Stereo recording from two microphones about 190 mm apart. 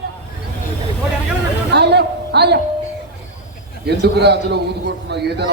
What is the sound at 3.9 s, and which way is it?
A man's voice, 60° right (ahead or behind).